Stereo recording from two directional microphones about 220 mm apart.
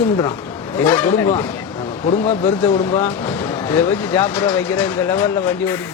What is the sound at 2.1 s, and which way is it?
Speech, 30° left (ahead or behind).